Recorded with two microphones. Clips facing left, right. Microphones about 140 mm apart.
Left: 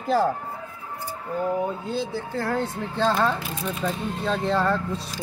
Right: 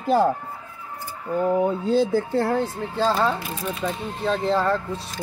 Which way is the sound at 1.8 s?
40° right (ahead or behind).